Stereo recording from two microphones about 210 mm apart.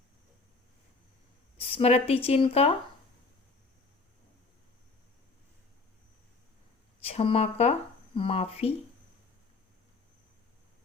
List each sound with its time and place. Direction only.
1.5 s speech: 25° left (ahead or behind)
7.0 s speech: 30° left (ahead or behind)